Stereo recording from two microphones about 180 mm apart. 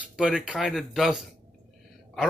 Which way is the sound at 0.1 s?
5° right (ahead or behind).